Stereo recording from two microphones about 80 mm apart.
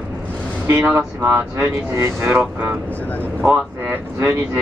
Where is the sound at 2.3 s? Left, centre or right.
Right.